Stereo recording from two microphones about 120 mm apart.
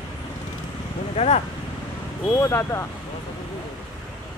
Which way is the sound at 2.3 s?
20° left (ahead or behind).